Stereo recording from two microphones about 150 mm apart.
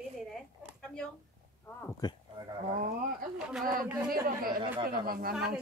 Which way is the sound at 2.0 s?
25° left (ahead or behind).